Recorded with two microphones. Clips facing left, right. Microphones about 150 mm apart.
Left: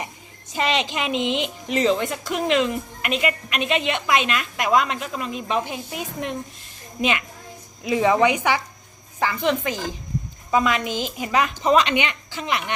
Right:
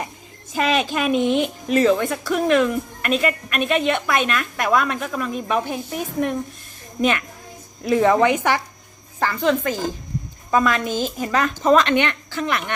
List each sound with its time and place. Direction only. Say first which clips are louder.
0.5 s speech: right 3 dB; 20° left (ahead or behind)